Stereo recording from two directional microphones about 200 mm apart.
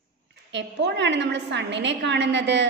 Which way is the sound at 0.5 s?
60° right (ahead or behind).